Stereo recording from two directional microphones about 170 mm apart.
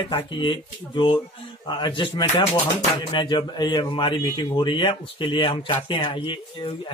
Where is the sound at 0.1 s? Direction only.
30° left (ahead or behind).